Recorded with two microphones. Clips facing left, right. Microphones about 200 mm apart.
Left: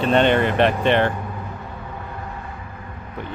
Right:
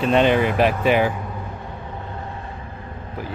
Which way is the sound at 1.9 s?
25° right (ahead or behind).